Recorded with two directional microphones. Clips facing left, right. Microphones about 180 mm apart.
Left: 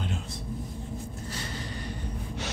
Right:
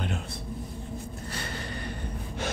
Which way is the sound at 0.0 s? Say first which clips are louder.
Right 1 dB; 60° right (ahead or behind).